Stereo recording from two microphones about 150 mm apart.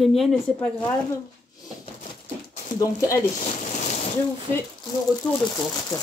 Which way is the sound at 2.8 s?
20° left (ahead or behind).